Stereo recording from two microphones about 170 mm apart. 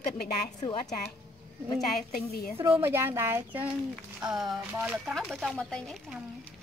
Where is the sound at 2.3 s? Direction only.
65° left (ahead or behind).